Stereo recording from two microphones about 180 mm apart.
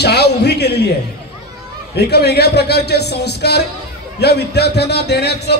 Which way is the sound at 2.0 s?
65° left (ahead or behind).